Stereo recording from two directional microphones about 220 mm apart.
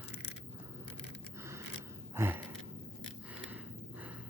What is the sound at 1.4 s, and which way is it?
Scissors, 10° right (ahead or behind).